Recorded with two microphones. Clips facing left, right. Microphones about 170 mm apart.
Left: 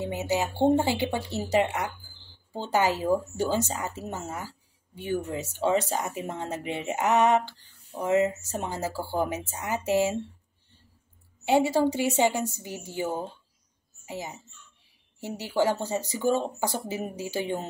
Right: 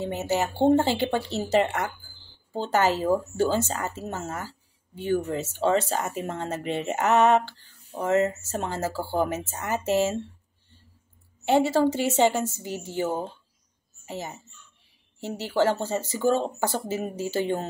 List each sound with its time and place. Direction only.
0.0 s a woman's voice: 10° left (ahead or behind)
11.4 s a woman's voice: 15° left (ahead or behind)